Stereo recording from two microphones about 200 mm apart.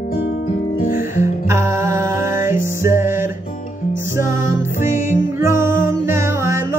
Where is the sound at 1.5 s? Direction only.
15° right (ahead or behind).